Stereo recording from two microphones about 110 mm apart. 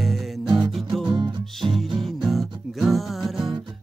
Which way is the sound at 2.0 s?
Centre (ahead or behind).